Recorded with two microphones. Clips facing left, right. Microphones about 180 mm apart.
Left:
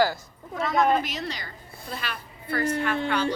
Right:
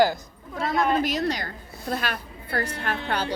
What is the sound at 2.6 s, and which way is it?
Speech, 40° right (ahead or behind).